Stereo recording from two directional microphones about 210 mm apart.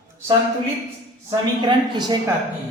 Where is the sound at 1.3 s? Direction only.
20° right (ahead or behind).